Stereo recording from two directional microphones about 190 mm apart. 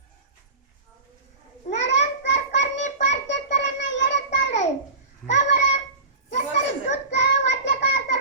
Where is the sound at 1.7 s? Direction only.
40° left (ahead or behind).